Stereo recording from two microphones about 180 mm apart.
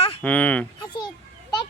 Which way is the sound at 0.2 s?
10° left (ahead or behind).